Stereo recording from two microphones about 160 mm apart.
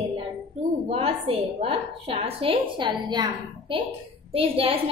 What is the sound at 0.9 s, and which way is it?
A woman's voice, 35° right (ahead or behind).